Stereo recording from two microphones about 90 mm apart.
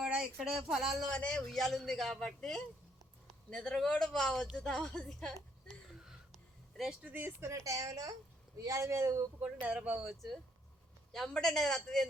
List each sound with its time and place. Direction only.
0.0 s speech: 10° right (ahead or behind)
1.1 s a man's voice: 10° left (ahead or behind)
5.6 s a sound: 5° right (ahead or behind)
7.1 s speech: 25° right (ahead or behind)
9.4 s speech: 15° right (ahead or behind)
11.1 s a man's voice: 5° left (ahead or behind)